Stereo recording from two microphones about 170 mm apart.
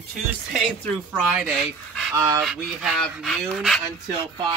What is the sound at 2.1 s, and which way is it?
Speech, 15° right (ahead or behind).